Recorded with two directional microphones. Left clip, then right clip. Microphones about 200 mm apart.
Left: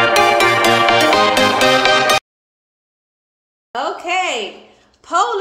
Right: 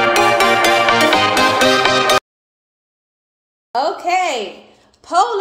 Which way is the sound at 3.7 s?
30° right (ahead or behind).